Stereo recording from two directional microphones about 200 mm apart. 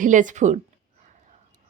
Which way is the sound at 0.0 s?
40° right (ahead or behind).